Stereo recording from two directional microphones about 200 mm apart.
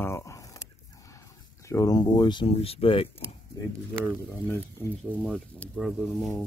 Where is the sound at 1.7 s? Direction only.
15° left (ahead or behind).